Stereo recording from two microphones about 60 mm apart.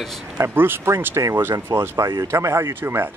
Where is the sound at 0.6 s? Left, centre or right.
Right.